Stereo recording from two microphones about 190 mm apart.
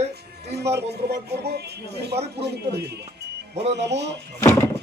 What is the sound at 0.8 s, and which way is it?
Speech, 60° right (ahead or behind).